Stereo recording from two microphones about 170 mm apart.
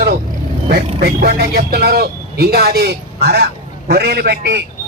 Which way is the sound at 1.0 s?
65° right (ahead or behind).